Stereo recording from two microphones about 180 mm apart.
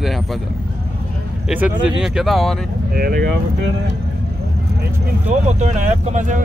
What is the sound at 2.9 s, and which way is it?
Speech, 60° right (ahead or behind).